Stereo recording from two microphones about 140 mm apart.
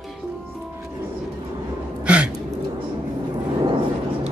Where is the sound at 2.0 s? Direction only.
10° right (ahead or behind).